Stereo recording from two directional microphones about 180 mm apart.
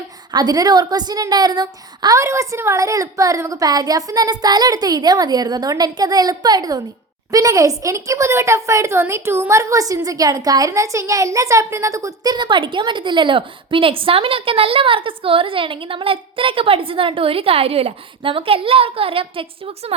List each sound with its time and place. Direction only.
0.3 s a woman's voice: 20° right (ahead or behind)